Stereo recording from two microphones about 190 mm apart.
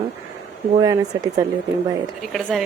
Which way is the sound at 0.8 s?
20° right (ahead or behind).